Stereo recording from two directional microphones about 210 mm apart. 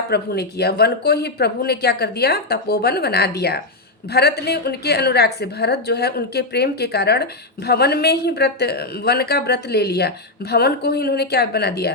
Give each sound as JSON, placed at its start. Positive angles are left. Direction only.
{"t": 0.1, "sound": "a woman's voice", "side_deg": 50}